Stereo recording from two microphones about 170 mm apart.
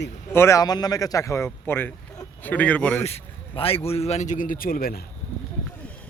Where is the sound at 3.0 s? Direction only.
35° left (ahead or behind); by 5.0 s 60° left (ahead or behind).